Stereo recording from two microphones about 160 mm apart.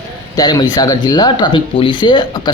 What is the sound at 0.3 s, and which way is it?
Speech, 25° left (ahead or behind).